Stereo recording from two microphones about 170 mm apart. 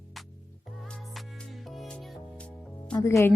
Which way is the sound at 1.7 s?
5° left (ahead or behind).